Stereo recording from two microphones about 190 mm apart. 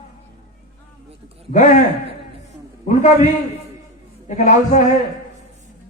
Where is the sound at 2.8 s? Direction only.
40° left (ahead or behind).